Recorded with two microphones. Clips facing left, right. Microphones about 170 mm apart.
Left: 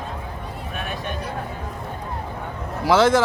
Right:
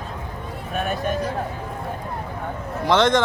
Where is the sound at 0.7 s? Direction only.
40° right (ahead or behind).